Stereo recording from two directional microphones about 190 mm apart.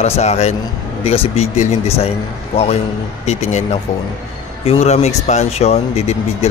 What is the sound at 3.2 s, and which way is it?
Speech, 35° left (ahead or behind).